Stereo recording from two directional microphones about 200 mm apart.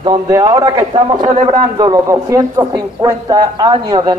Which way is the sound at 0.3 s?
20° right (ahead or behind).